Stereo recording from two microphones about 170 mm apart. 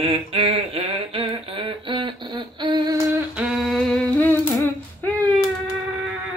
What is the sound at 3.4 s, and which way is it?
Humming, centre (ahead or behind).